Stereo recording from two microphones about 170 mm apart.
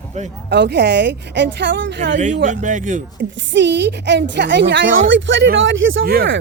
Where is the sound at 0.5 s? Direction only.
85° right.